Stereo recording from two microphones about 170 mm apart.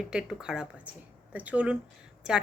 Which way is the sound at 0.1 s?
5° right (ahead or behind).